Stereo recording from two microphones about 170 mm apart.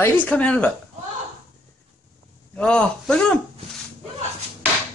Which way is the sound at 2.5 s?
5° left (ahead or behind).